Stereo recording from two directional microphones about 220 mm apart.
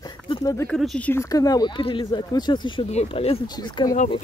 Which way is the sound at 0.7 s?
5° left (ahead or behind).